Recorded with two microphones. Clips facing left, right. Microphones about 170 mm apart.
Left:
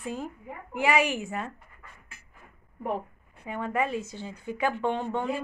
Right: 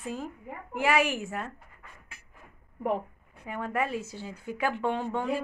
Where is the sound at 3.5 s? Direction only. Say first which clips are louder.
Left 2 dB; 5° right (ahead or behind).